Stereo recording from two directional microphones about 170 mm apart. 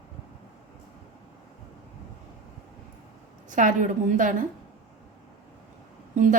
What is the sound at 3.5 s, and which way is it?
Speech, 50° right (ahead or behind).